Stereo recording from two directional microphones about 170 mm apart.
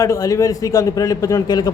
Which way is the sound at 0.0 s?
20° left (ahead or behind).